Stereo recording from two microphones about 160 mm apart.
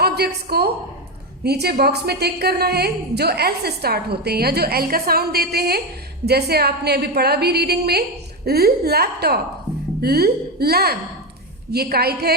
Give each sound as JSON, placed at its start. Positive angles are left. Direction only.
{"t": 0.0, "sound": "a woman's voice", "side_deg": -90}